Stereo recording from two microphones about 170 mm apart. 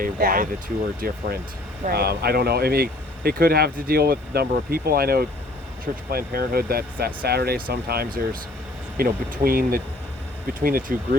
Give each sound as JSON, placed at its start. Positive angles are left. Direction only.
{"t": 0.0, "sound": "speech", "side_deg": -55}